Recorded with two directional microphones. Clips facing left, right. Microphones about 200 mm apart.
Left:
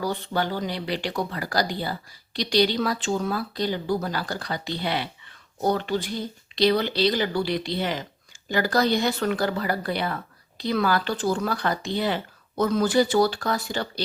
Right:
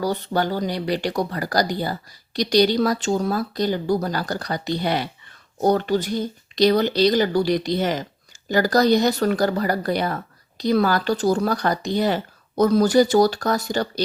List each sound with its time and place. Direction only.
0.0 s speech: 40° right (ahead or behind)